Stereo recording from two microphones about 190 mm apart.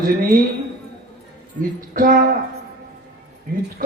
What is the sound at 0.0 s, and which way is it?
Speech, 50° right (ahead or behind).